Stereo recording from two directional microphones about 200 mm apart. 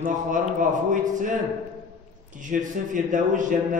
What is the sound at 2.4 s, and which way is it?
A man's voice, 40° right (ahead or behind).